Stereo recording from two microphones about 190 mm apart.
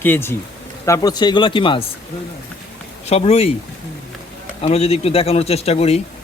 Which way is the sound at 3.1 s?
30° left (ahead or behind).